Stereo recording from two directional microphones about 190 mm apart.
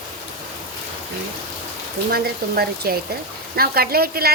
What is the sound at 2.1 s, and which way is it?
Speech, 55° right (ahead or behind).